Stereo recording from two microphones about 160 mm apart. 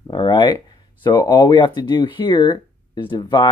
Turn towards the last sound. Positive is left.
turn(degrees=30)  # may be behind; listen again after turning